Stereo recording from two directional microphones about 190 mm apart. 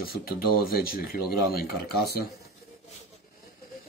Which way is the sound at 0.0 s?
50° left (ahead or behind).